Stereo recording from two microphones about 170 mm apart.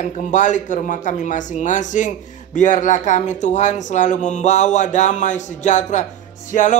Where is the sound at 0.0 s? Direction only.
45° left (ahead or behind).